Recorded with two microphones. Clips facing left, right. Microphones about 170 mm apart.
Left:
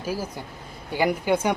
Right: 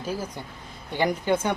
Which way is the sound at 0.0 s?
10° left (ahead or behind).